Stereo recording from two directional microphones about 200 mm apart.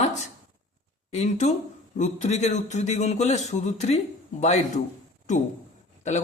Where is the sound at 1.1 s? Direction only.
35° left (ahead or behind).